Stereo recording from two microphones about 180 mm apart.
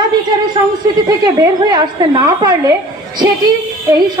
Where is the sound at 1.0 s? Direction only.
20° right (ahead or behind).